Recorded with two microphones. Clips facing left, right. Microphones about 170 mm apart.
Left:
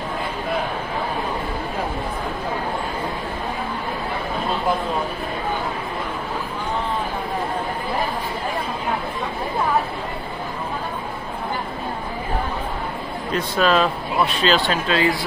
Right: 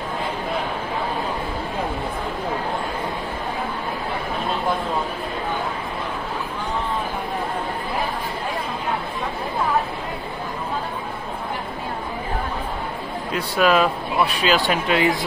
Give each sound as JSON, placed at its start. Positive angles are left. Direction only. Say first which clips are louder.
{"t": 13.3, "sound": "speech", "louder": "even", "side_deg": -10}